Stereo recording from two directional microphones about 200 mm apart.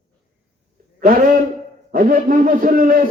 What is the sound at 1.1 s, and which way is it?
A man's voice, 45° right (ahead or behind).